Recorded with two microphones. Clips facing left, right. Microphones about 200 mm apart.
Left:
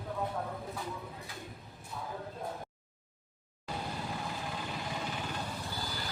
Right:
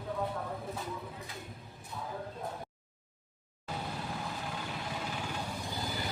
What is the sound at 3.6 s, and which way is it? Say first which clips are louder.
Vehicle: even; 5° left (ahead or behind).